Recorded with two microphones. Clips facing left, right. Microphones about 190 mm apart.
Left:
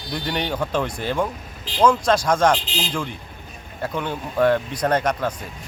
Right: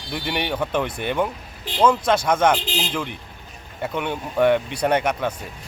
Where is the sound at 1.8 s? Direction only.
5° right (ahead or behind).